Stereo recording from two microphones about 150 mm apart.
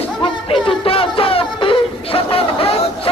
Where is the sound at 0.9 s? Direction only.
40° left (ahead or behind).